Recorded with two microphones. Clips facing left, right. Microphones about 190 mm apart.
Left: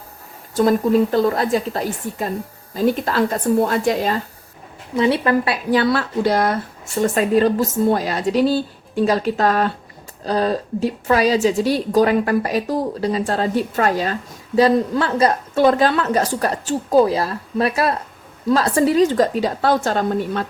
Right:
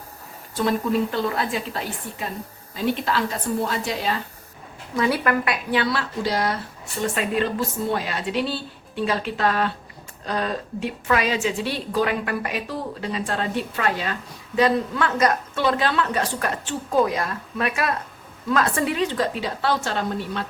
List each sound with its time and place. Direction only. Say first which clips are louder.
0.5 s a woman's voice: left 7 dB; 40° left (ahead or behind)
4.9 s a woman's voice: left 5 dB; 25° left (ahead or behind)
5.7 s a woman's voice: left 7 dB; 45° left (ahead or behind); by 15.6 s 30° left (ahead or behind)
15.6 s a woman's voice: left 7 dB; 40° left (ahead or behind)